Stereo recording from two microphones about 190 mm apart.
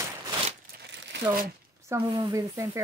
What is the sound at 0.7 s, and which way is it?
Crumpling, 65° right (ahead or behind).